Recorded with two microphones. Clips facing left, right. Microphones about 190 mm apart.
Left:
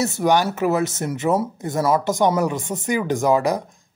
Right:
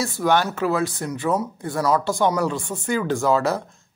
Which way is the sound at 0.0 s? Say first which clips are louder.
Left 2 dB; 20° left (ahead or behind).